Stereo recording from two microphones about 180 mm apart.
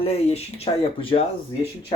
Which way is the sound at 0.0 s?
35° left (ahead or behind).